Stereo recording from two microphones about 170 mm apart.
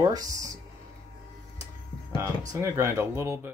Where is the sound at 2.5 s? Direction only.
15° right (ahead or behind).